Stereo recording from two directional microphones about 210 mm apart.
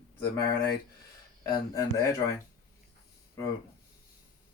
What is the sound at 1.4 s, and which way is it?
Speech, 20° left (ahead or behind).